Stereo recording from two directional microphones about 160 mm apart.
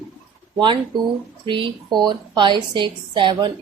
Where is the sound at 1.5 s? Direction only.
30° right (ahead or behind).